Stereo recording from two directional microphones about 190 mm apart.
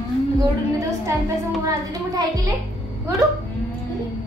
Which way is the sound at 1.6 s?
20° right (ahead or behind).